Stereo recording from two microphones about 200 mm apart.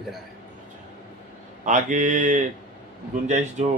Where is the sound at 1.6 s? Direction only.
40° right (ahead or behind).